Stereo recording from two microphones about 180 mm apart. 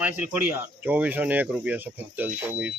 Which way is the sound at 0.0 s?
10° right (ahead or behind).